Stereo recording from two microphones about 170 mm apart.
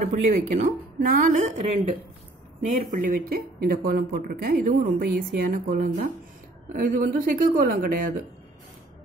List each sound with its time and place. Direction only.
0.0 s speech: 50° right (ahead or behind)